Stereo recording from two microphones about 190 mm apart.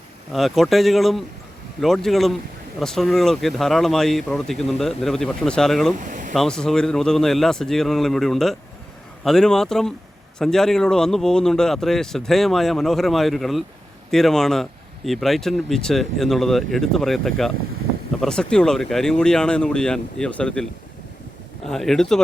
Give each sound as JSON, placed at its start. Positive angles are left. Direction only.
{"t": 0.3, "sound": "speech", "side_deg": 0}
{"t": 6.0, "sound": "a sound", "side_deg": -45}
{"t": 6.3, "sound": "speech", "side_deg": 5}
{"t": 21.7, "sound": "speech", "side_deg": 0}